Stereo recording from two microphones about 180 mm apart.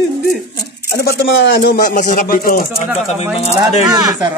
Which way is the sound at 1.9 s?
45° left (ahead or behind).